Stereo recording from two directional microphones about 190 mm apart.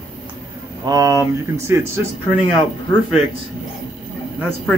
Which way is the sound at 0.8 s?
20° right (ahead or behind).